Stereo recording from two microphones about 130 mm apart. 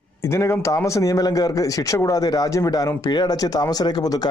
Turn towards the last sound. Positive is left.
turn(degrees=30)  # may be behind; listen again after turning